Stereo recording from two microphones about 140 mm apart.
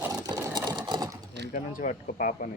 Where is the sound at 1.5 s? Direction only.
70° left (ahead or behind).